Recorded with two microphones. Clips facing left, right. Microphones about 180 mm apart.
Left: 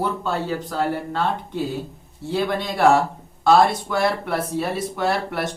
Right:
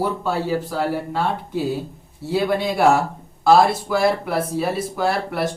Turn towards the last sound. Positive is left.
turn(degrees=0)  # may be behind; listen again after turning